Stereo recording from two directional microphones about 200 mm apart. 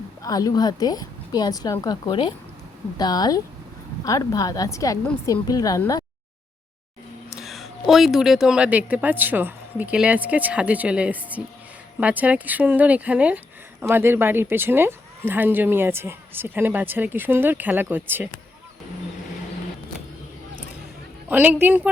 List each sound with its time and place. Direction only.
0.2 s a woman's voice: 20° left (ahead or behind)
7.3 s speech: centre (ahead or behind)
21.2 s speech: 10° right (ahead or behind)